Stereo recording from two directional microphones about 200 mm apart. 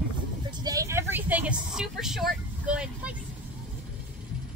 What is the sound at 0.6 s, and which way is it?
Vehicle, 15° right (ahead or behind).